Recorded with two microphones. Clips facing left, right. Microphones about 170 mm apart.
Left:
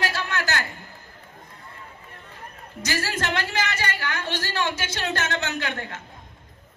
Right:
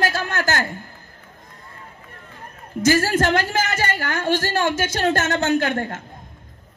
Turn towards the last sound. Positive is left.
turn(degrees=-45)  # may be behind; listen again after turning